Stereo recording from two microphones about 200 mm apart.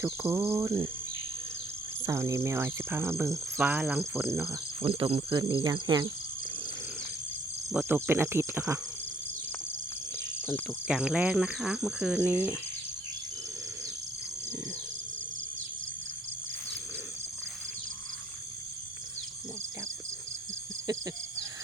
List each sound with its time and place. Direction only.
0.0 s speech: 15° right (ahead or behind)
2.0 s speech: 15° right (ahead or behind)
4.8 s speech: 30° right (ahead or behind)
7.7 s speech: 10° right (ahead or behind)
10.8 s speech: 5° right (ahead or behind)